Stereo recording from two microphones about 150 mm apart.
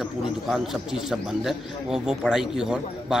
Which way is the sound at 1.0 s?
5° right (ahead or behind).